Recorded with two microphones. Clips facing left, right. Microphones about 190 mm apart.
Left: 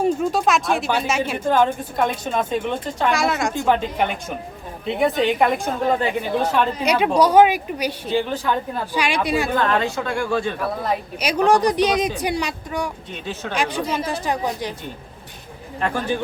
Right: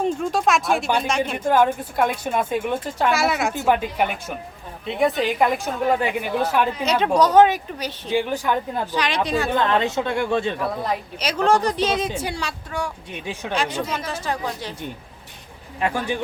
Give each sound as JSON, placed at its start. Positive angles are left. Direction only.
{"t": 0.0, "sound": "speech", "side_deg": 5}
{"t": 1.5, "sound": "a woman's voice", "side_deg": -10}
{"t": 6.8, "sound": "speech", "side_deg": 10}
{"t": 8.1, "sound": "speech", "side_deg": -15}
{"t": 8.9, "sound": "speech", "side_deg": 10}
{"t": 9.6, "sound": "speech", "side_deg": -20}
{"t": 11.2, "sound": "speech", "side_deg": 15}
{"t": 13.9, "sound": "speech", "side_deg": 15}
{"t": 15.8, "sound": "speech", "side_deg": -10}